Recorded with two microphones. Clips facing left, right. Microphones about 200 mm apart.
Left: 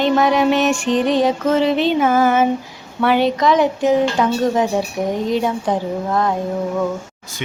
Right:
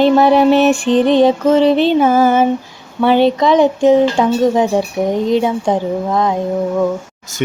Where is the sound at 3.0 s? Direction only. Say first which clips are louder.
Right 4 dB; 30° right (ahead or behind).